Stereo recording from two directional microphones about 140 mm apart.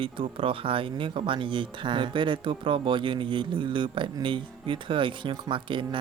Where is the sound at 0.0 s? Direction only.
40° right (ahead or behind).